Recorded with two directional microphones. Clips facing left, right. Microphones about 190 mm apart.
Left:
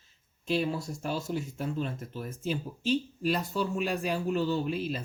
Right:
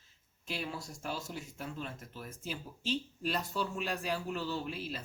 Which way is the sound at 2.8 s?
10° left (ahead or behind).